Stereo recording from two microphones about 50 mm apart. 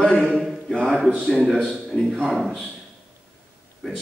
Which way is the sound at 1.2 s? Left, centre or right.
Centre.